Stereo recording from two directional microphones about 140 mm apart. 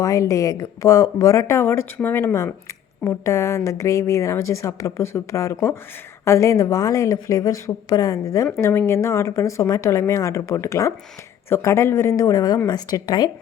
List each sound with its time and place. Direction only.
0.0 s speech: 25° left (ahead or behind)